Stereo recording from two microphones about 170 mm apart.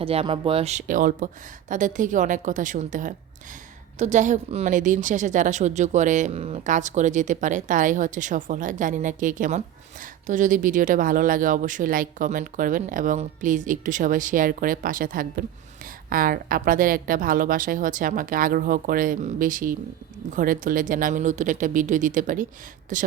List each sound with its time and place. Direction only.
0.0 s a woman's voice: 35° right (ahead or behind)